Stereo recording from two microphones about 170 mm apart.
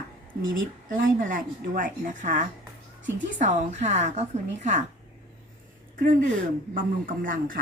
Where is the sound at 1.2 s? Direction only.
55° right (ahead or behind).